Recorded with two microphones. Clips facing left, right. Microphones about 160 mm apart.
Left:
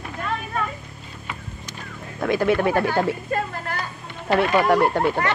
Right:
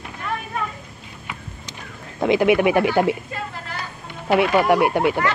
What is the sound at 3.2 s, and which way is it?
Speech, 55° left (ahead or behind).